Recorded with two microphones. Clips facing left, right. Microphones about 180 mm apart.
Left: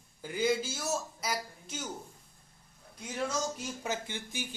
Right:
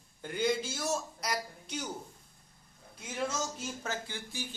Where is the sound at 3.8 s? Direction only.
20° left (ahead or behind).